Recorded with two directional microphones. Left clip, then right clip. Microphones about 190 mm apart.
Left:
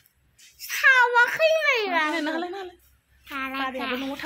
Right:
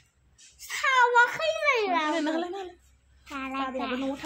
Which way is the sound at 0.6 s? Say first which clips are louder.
Left 5 dB; 10° right (ahead or behind).